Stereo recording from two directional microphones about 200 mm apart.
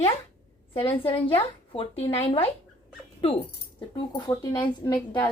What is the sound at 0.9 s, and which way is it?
Speech, 25° left (ahead or behind).